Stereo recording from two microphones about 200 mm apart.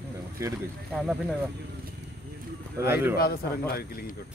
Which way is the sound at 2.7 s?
10° right (ahead or behind).